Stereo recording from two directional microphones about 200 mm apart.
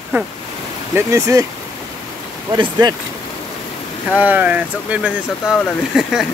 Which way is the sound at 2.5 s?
25° right (ahead or behind).